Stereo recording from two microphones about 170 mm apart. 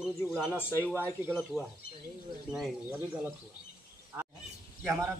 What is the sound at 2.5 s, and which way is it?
Speech, 10° right (ahead or behind).